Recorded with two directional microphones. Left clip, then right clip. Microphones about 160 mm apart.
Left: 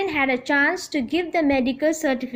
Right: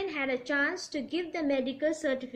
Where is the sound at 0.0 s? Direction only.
50° left (ahead or behind).